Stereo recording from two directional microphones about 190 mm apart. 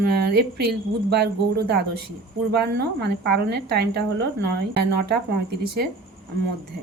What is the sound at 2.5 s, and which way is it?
A woman's voice, 60° right (ahead or behind).